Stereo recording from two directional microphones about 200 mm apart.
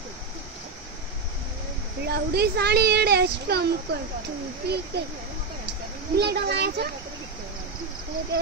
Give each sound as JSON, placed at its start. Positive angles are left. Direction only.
{"t": 2.0, "sound": "speech", "side_deg": -55}
{"t": 6.1, "sound": "a child's voice", "side_deg": -55}